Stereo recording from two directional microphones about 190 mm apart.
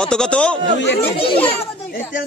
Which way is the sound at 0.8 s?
65° left (ahead or behind).